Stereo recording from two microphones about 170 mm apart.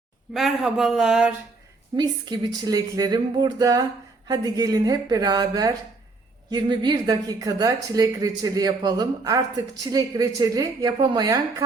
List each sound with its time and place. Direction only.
0.3 s speech: centre (ahead or behind)
2.0 s a woman's voice: 25° right (ahead or behind)